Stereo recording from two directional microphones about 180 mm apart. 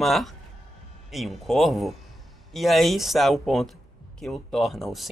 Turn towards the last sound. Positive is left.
turn(degrees=0)  # may be behind; listen again after turning